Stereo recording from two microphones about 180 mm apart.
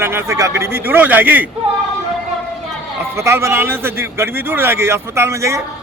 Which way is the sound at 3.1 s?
15° right (ahead or behind).